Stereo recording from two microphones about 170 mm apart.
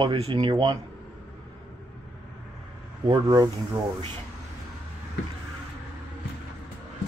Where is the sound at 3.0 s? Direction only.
25° right (ahead or behind).